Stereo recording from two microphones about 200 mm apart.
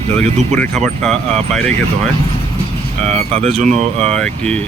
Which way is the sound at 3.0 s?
35° right (ahead or behind).